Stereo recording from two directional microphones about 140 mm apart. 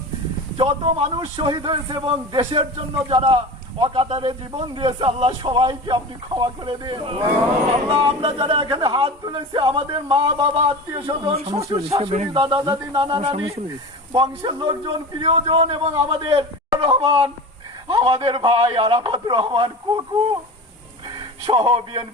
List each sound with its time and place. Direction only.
0.5 s speech: 40° right (ahead or behind)
12.3 s speech: 40° right (ahead or behind)
13.2 s speech: 45° right (ahead or behind)
14.1 s speech: 35° right (ahead or behind)
21.5 s speech: 40° right (ahead or behind)